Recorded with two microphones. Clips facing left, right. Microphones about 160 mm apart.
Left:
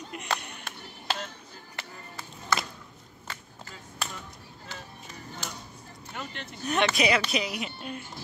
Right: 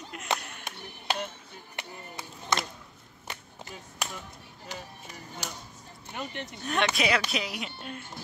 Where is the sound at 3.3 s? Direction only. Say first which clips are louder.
Right 2 dB; 15° right (ahead or behind).